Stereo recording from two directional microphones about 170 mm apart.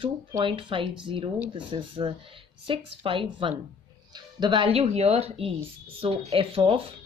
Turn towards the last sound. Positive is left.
turn(degrees=-35)  # may be behind; listen again after turning